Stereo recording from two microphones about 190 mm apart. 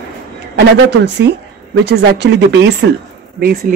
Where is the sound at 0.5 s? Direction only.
65° right (ahead or behind).